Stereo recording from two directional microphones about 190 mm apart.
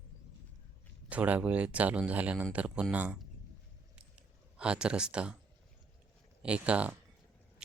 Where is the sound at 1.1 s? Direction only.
5° right (ahead or behind).